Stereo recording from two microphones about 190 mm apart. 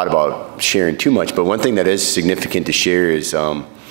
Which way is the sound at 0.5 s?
5° right (ahead or behind).